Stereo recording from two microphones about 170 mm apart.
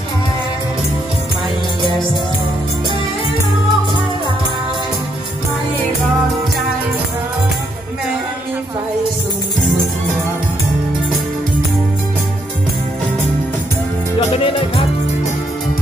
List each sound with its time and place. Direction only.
14.3 s music: 30° left (ahead or behind)